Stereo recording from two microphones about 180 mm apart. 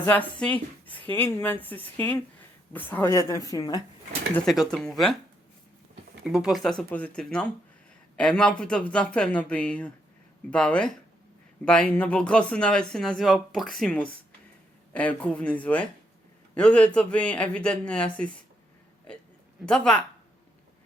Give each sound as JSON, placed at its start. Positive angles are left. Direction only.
{"t": 0.0, "sound": "a woman's voice", "side_deg": 10}
{"t": 4.4, "sound": "speech", "side_deg": -5}
{"t": 6.2, "sound": "speech", "side_deg": -5}
{"t": 19.6, "sound": "speech", "side_deg": 5}